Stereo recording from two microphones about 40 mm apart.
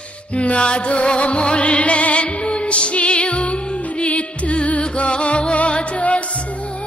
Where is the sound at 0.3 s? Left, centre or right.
Left.